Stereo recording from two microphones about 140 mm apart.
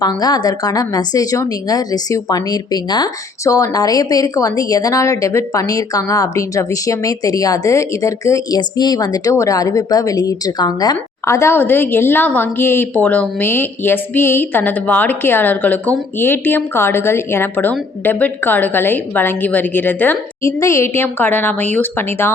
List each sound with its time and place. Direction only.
0.0 s a woman's voice: 30° left (ahead or behind)